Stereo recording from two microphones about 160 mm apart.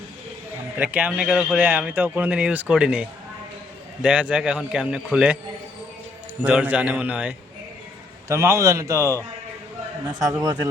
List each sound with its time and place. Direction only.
0.8 s a man's voice: 10° right (ahead or behind)
6.4 s a man's voice: 10° right (ahead or behind)